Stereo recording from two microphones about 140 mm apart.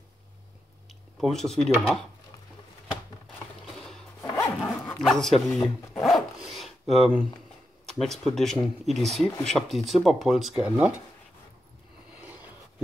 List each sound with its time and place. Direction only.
1.2 s speech: 5° left (ahead or behind)
3.6 s music: 5° left (ahead or behind)
4.2 s dog: 20° left (ahead or behind)
5.0 s speech: centre (ahead or behind)
6.0 s dog: centre (ahead or behind)
8.0 s speech: centre (ahead or behind)